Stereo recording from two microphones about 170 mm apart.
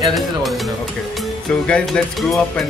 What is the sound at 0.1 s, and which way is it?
Speech, centre (ahead or behind).